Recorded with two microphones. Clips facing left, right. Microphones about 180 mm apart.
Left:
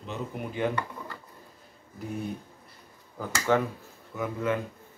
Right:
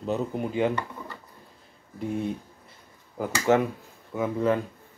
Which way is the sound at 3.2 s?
25° right (ahead or behind).